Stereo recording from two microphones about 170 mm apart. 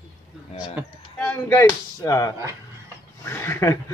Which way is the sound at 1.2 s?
15° left (ahead or behind).